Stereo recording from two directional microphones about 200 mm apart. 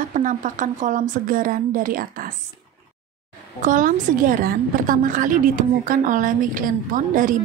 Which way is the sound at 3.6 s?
40° right (ahead or behind).